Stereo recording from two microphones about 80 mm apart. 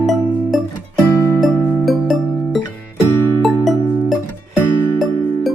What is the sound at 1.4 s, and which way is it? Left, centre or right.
Music, centre.